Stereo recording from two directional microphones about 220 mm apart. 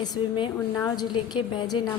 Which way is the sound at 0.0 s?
20° left (ahead or behind).